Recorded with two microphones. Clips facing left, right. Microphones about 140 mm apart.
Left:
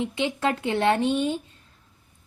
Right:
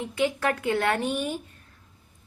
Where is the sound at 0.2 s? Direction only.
25° left (ahead or behind).